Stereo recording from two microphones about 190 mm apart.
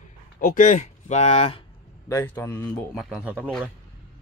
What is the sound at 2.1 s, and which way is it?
Speech, 10° left (ahead or behind).